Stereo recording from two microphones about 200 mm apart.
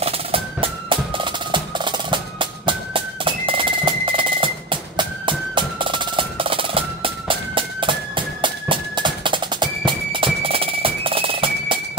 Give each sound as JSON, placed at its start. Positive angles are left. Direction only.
{"t": 0.0, "sound": "music", "side_deg": -30}